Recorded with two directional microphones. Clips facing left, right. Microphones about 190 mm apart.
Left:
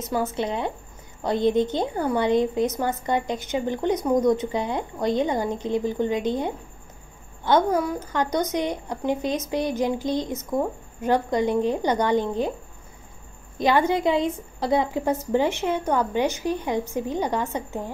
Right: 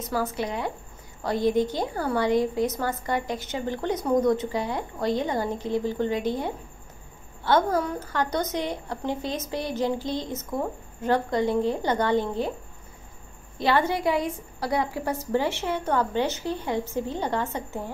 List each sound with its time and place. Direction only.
0.1 s a woman's voice: 25° left (ahead or behind)
13.6 s a woman's voice: 15° left (ahead or behind)